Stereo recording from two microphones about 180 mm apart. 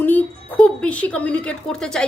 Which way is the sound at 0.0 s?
10° left (ahead or behind).